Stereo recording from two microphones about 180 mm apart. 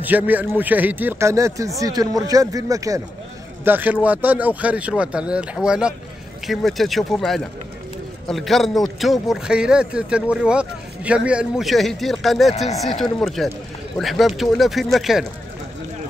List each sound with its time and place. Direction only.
0.0 s a man's voice: 10° right (ahead or behind)